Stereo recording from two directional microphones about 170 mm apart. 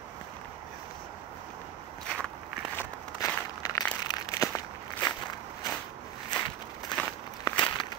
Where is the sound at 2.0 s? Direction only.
5° left (ahead or behind).